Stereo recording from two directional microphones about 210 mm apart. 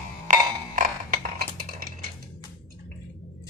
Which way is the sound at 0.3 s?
40° right (ahead or behind).